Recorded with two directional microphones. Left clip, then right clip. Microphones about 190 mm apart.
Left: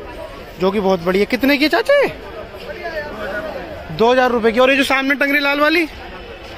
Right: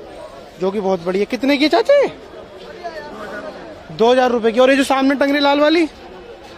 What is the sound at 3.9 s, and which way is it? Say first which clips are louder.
A man's voice: even; 20° right (ahead or behind).